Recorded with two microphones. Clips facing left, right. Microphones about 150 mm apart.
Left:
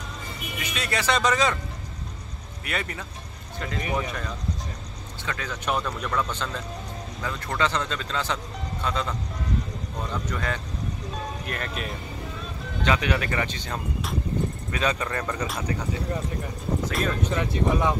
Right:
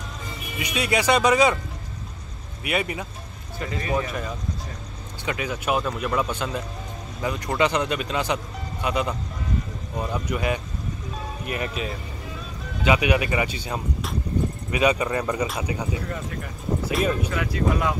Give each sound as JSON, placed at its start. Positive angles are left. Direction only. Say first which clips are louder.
{"t": 0.6, "sound": "speech", "louder": "right 6 dB", "side_deg": -15}
{"t": 2.6, "sound": "speech", "louder": "right 6 dB", "side_deg": -15}
{"t": 15.4, "sound": "speech", "louder": "right 3 dB", "side_deg": 0}
{"t": 16.8, "sound": "speech", "louder": "right 5 dB", "side_deg": -10}
{"t": 17.3, "sound": "speech", "louder": "even", "side_deg": 25}